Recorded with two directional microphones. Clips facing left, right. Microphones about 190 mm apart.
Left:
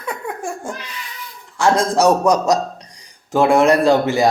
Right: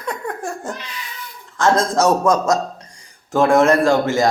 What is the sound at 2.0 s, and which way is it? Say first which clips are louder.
A man's voice: left 3 dB; 15° left (ahead or behind).